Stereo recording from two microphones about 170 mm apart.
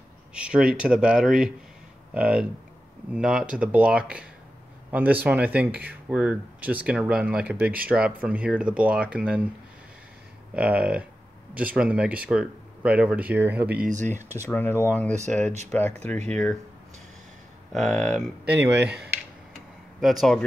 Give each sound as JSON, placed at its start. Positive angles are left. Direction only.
{"t": 0.3, "sound": "speech", "side_deg": -5}
{"t": 10.5, "sound": "speech", "side_deg": -5}
{"t": 13.8, "sound": "speech", "side_deg": -45}
{"t": 14.4, "sound": "speech", "side_deg": 10}
{"t": 17.7, "sound": "speech", "side_deg": 0}
{"t": 18.4, "sound": "speech", "side_deg": -80}
{"t": 20.0, "sound": "speech", "side_deg": 0}